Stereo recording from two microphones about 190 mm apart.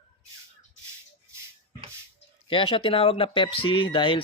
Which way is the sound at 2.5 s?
25° left (ahead or behind).